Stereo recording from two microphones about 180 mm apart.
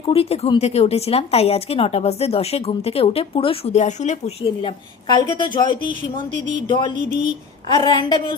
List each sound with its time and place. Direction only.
0.0 s speech: 30° left (ahead or behind)
4.4 s speech: 25° left (ahead or behind)
6.7 s speech: 25° left (ahead or behind)